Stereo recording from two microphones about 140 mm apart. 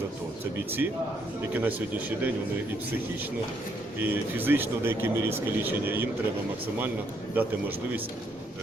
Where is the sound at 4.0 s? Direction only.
15° right (ahead or behind).